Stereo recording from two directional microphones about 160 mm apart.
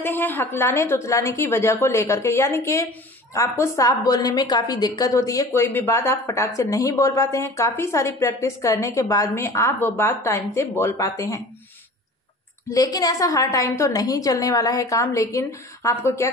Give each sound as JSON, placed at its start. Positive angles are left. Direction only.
{"t": 0.0, "sound": "a woman's voice", "side_deg": 10}
{"t": 12.6, "sound": "a woman's voice", "side_deg": 20}